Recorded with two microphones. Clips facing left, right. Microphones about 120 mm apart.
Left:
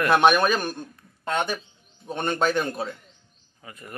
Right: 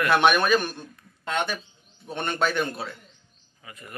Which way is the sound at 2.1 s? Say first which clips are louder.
Left 3 dB; 40° left (ahead or behind).